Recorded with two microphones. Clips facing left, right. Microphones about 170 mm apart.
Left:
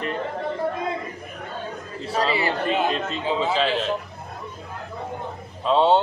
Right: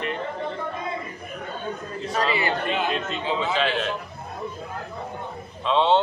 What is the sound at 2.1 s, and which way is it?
A man's voice, 30° left (ahead or behind).